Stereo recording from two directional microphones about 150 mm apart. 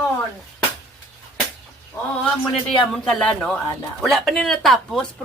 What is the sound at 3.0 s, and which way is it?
A man's voice, 5° left (ahead or behind).